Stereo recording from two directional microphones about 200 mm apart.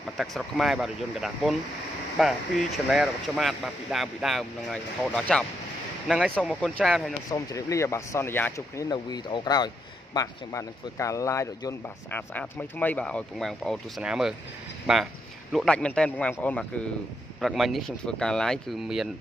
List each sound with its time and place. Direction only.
0.2 s speech: centre (ahead or behind)
7.2 s speech: 15° left (ahead or behind); by 19.0 s centre (ahead or behind)